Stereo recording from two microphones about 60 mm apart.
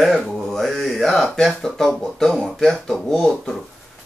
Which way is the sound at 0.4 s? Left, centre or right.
Centre.